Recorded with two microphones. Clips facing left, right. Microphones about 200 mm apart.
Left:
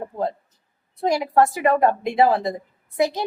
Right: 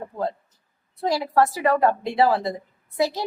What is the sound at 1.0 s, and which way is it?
A woman's voice, 15° left (ahead or behind).